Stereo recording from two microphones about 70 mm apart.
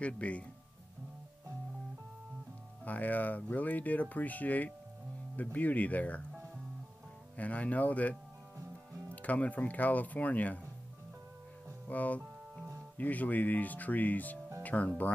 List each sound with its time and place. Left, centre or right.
0.0 s speech: centre
2.8 s speech: left
7.3 s speech: left
11.9 s speech: left
14.6 s music: left